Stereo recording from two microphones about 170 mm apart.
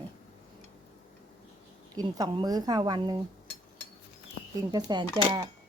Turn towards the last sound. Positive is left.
turn(degrees=-25)  # may be behind; listen again after turning